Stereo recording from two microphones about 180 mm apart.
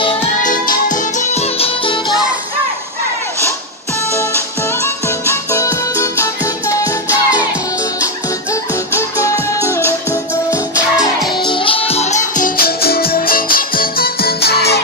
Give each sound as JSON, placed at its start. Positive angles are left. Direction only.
{"t": 0.0, "sound": "music", "side_deg": 30}
{"t": 0.4, "sound": "music", "side_deg": 45}
{"t": 4.1, "sound": "music", "side_deg": 15}
{"t": 9.7, "sound": "music", "side_deg": 15}
{"t": 10.5, "sound": "music", "side_deg": -5}
{"t": 11.4, "sound": "music", "side_deg": 30}